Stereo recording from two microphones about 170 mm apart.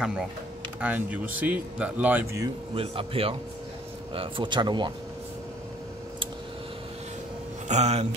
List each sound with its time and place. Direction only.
0.0 s speech: 5° right (ahead or behind)
2.7 s speech: 35° right (ahead or behind)
7.6 s speech: 40° right (ahead or behind)